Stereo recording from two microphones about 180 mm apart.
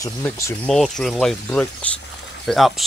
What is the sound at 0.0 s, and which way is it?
Speech, 15° left (ahead or behind).